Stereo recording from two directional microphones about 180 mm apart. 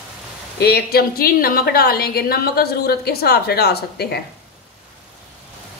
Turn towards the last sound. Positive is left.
turn(degrees=65)  # may be behind; listen again after turning